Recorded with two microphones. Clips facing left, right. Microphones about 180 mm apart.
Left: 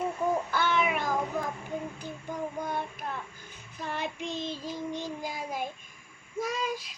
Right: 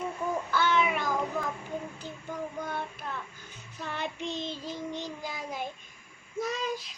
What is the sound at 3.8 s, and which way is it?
Child singing, 45° left (ahead or behind).